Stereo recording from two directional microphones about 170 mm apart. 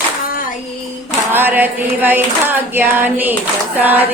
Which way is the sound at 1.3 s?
10° right (ahead or behind).